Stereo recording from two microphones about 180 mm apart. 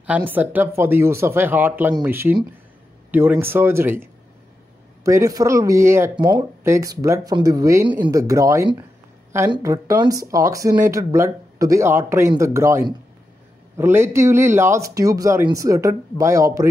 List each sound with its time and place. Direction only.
0.0 s speech: 10° right (ahead or behind)